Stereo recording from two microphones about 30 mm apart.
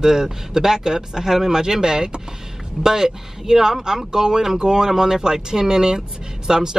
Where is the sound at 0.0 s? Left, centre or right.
Centre.